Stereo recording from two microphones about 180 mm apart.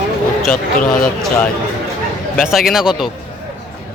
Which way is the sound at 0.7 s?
50° left (ahead or behind).